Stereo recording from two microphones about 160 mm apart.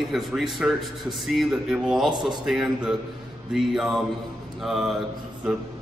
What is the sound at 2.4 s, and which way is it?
A man's voice, 5° right (ahead or behind).